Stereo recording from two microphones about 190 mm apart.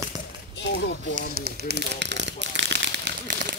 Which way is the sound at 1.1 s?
55° right (ahead or behind).